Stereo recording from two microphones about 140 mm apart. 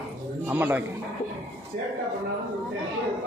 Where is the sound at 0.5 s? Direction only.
15° right (ahead or behind).